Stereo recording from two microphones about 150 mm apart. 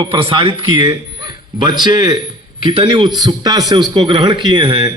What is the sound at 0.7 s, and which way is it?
A man's voice, 30° right (ahead or behind).